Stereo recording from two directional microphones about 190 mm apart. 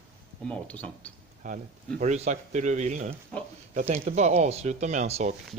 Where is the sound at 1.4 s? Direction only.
40° right (ahead or behind).